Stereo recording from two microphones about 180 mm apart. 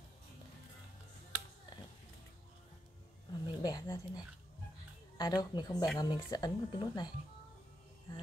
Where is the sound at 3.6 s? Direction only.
20° left (ahead or behind).